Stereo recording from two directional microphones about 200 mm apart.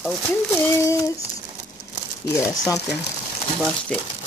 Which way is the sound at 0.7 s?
15° left (ahead or behind).